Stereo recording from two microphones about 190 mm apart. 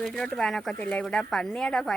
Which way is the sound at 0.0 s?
5° left (ahead or behind).